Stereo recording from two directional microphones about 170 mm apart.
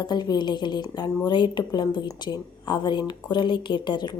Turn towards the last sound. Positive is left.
turn(degrees=25)  # may be behind; listen again after turning